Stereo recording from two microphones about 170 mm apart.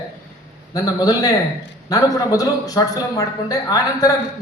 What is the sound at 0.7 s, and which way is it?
A man's voice, 20° left (ahead or behind).